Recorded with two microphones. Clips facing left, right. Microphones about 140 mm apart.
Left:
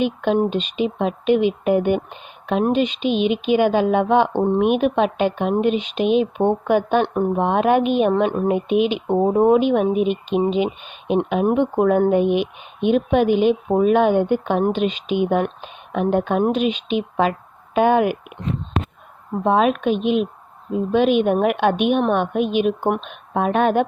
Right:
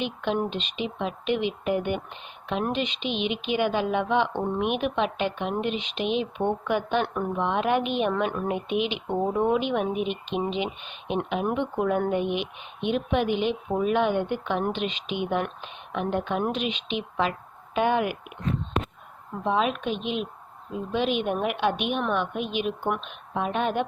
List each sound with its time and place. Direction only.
0.0 s speech: 45° left (ahead or behind)
7.0 s a woman's voice: 35° left (ahead or behind)
7.3 s speech: 45° left (ahead or behind)
8.3 s a woman's voice: 35° left (ahead or behind)
8.5 s speech: 45° left (ahead or behind)
19.3 s speech: 50° left (ahead or behind)